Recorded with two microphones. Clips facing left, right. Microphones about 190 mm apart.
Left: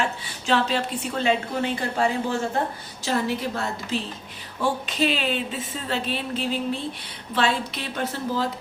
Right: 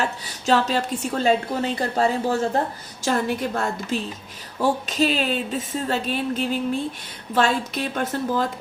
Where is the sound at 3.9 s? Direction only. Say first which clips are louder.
Right 2 dB; 45° right (ahead or behind).